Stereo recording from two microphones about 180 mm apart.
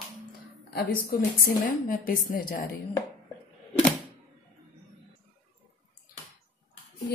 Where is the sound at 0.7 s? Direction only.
55° left (ahead or behind).